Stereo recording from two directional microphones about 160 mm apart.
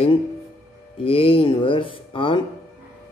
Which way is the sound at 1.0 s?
35° left (ahead or behind).